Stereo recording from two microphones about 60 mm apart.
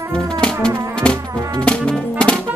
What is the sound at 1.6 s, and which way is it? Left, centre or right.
Brass instrument, centre.